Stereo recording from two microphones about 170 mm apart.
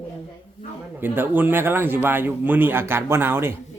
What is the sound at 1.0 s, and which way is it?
A man's voice, 10° right (ahead or behind).